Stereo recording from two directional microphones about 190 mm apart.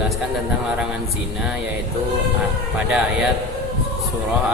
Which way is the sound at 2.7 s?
5° right (ahead or behind).